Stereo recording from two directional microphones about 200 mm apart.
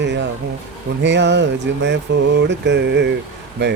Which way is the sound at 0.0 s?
60° right (ahead or behind).